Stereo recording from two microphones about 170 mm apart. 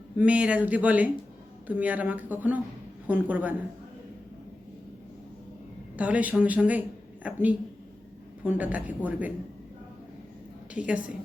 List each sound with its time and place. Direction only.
0.2 s speech: 10° right (ahead or behind)
6.0 s speech: 10° right (ahead or behind)
10.8 s speech: 10° right (ahead or behind)